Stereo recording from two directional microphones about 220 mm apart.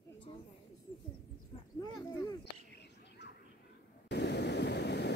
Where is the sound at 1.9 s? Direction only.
15° left (ahead or behind).